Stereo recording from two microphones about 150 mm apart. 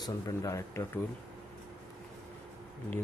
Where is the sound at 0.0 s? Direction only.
20° left (ahead or behind).